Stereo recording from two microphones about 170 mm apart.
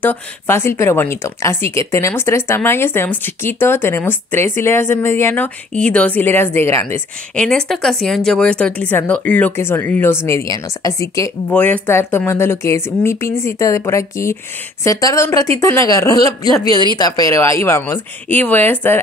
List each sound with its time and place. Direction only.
0.0 s speech: 10° left (ahead or behind)
7.3 s speech: 5° left (ahead or behind)